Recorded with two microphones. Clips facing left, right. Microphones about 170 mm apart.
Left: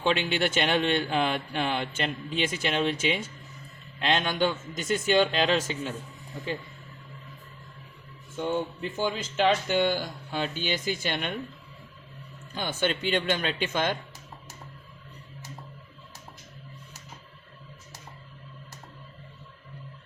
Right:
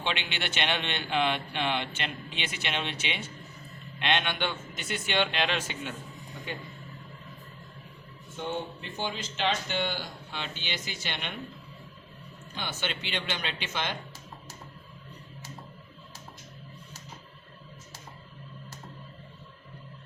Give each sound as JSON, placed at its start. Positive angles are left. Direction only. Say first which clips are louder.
{"t": 0.0, "sound": "speech", "louder": "left 8 dB", "side_deg": 40}
{"t": 8.4, "sound": "speech", "louder": "left 5 dB", "side_deg": 45}
{"t": 12.5, "sound": "speech", "louder": "left 7 dB", "side_deg": 45}